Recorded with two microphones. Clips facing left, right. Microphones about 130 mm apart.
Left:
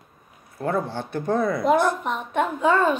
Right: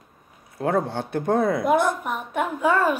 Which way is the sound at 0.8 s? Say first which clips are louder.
Right 2 dB; 55° right (ahead or behind).